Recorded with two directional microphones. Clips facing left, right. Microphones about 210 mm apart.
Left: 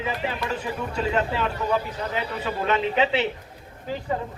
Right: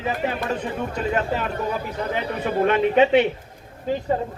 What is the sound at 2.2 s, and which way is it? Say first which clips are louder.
A man's voice: right 7 dB; 55° right (ahead or behind).